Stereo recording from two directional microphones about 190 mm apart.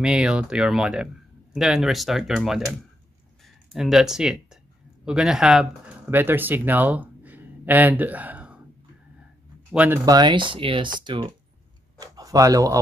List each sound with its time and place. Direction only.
0.0 s speech: 5° right (ahead or behind)
9.8 s speech: 15° right (ahead or behind)